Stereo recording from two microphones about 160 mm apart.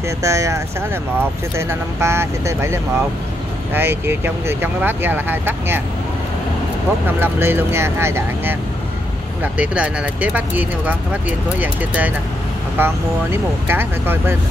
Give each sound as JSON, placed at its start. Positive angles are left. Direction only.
{"t": 0.2, "sound": "speech", "side_deg": -20}
{"t": 7.1, "sound": "speech", "side_deg": -15}